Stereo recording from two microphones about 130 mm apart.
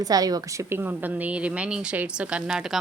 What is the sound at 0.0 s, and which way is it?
Speech, 30° right (ahead or behind).